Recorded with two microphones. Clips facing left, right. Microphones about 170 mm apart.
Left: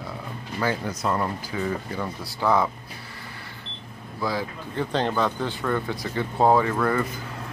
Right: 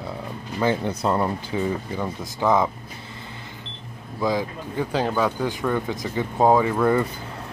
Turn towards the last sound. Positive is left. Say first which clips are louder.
# right 2 dB
turn(degrees=-15)  # may be behind; listen again after turning